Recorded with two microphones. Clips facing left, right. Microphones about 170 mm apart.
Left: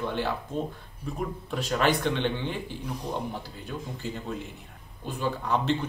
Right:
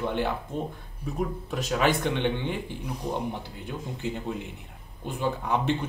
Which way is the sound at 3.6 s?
15° right (ahead or behind).